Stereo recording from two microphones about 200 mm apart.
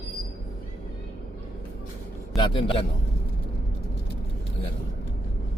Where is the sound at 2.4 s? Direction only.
25° left (ahead or behind).